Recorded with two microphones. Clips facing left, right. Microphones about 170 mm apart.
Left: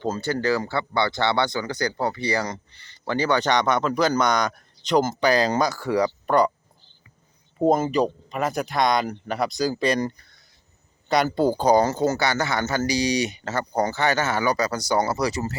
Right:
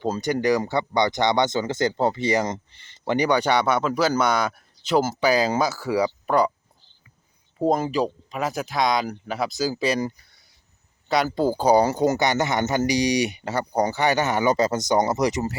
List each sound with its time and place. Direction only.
0.0 s speech: 15° right (ahead or behind)
7.6 s speech: centre (ahead or behind)
11.1 s speech: centre (ahead or behind); by 15.5 s 20° right (ahead or behind)